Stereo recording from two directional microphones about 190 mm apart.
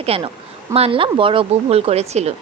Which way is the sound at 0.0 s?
30° right (ahead or behind).